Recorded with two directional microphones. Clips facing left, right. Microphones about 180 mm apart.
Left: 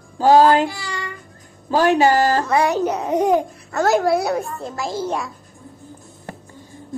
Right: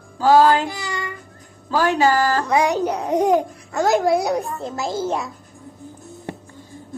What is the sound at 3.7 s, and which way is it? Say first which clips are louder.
A woman's voice: even; 15° right (ahead or behind).